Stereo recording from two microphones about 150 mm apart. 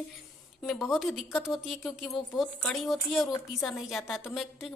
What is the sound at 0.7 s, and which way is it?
Speech, centre (ahead or behind).